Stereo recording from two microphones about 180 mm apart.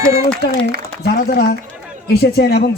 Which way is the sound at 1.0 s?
60° left (ahead or behind).